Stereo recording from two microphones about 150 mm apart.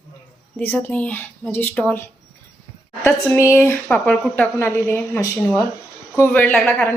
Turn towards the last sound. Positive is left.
turn(degrees=15)  # may be behind; listen again after turning